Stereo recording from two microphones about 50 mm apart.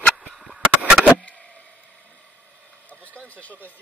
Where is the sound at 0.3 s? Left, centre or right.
Centre.